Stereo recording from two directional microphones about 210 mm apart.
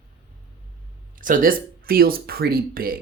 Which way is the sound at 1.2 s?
40° right (ahead or behind).